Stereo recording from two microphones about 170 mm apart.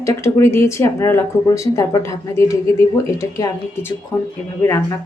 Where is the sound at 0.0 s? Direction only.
15° left (ahead or behind).